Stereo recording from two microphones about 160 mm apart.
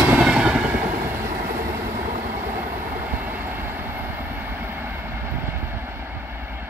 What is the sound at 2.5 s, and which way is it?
Train, 15° right (ahead or behind).